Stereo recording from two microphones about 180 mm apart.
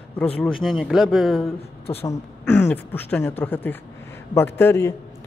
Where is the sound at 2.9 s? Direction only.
10° left (ahead or behind).